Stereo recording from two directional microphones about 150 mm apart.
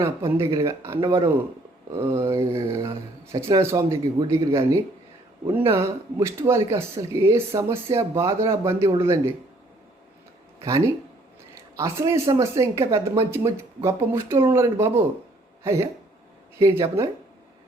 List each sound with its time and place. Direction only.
0.3 s speech: 20° right (ahead or behind)
0.9 s speech: 35° right (ahead or behind)
1.9 s speech: 20° right (ahead or behind)
10.6 s speech: 20° right (ahead or behind)